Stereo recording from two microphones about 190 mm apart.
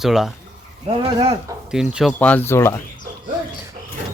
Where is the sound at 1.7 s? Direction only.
5° right (ahead or behind).